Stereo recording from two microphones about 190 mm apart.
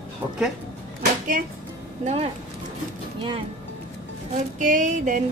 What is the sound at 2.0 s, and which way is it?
Speech, 35° right (ahead or behind).